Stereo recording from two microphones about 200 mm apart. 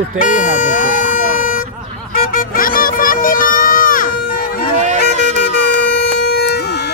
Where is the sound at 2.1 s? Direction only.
45° left (ahead or behind).